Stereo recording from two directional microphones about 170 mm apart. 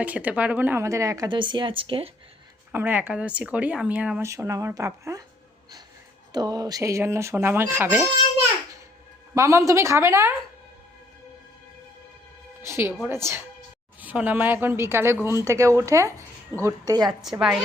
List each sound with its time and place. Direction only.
0.0 s speech: 10° right (ahead or behind); by 2.0 s 30° right (ahead or behind)
2.7 s a woman's voice: 10° right (ahead or behind)
4.3 s a woman's voice: 20° right (ahead or behind)
6.3 s a woman's voice: 20° right (ahead or behind)
9.3 s a woman's voice: 20° right (ahead or behind)
12.6 s a woman's voice: 15° right (ahead or behind)
17.1 s a woman's voice: centre (ahead or behind)